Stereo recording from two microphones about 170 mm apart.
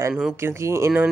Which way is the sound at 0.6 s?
15° right (ahead or behind).